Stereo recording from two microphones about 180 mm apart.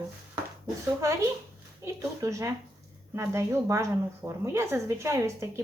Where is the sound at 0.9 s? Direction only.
15° right (ahead or behind).